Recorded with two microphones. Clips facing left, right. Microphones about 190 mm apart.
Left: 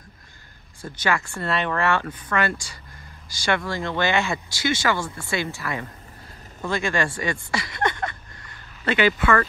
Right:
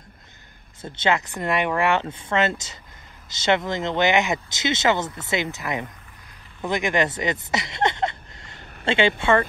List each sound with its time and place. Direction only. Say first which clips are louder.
0.8 s speech: right 2 dB; 25° right (ahead or behind)
7.5 s a sound: right 2 dB; 25° right (ahead or behind)
8.8 s speech: even; 25° right (ahead or behind)